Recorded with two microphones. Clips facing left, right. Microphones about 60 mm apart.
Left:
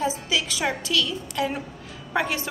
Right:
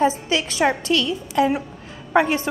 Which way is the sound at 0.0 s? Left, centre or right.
Right.